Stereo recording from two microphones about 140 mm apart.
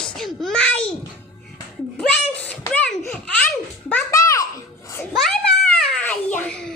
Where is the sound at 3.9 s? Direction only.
20° left (ahead or behind).